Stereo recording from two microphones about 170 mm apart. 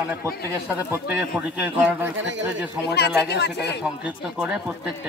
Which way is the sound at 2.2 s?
90° right.